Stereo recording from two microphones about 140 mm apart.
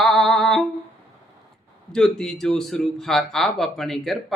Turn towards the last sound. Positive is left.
turn(degrees=0)  # may be behind; listen again after turning